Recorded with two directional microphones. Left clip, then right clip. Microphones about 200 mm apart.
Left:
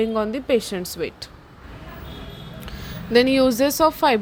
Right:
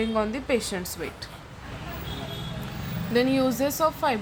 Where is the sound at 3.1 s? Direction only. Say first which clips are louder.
Left 7 dB; 40° left (ahead or behind).